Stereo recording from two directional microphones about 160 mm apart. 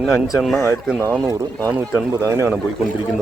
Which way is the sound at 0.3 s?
Centre (ahead or behind).